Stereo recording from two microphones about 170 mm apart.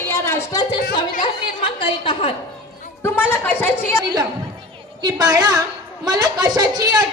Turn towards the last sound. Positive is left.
turn(degrees=-20)  # may be behind; listen again after turning